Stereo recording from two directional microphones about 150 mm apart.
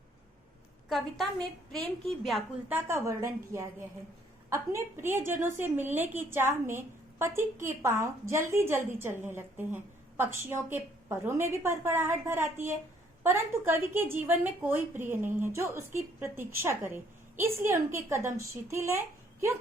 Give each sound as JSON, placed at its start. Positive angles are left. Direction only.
{"t": 0.9, "sound": "a woman's voice", "side_deg": 0}
{"t": 2.6, "sound": "a woman's voice", "side_deg": -15}